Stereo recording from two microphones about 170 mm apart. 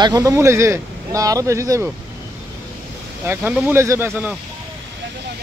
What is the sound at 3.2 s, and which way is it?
Speech, 10° right (ahead or behind).